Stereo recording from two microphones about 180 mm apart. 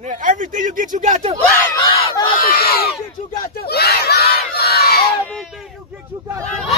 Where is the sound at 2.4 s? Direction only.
60° left (ahead or behind).